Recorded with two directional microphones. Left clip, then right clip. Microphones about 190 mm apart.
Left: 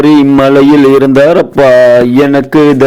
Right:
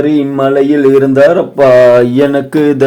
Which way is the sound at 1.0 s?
45° left (ahead or behind).